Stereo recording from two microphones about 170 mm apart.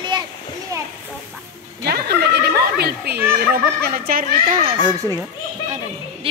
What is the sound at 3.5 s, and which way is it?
Speech, 65° right (ahead or behind).